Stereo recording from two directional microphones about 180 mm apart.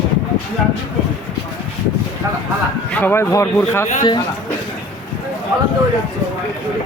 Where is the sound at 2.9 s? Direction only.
10° left (ahead or behind).